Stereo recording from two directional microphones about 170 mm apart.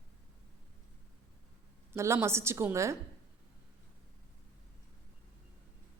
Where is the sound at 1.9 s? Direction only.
15° right (ahead or behind).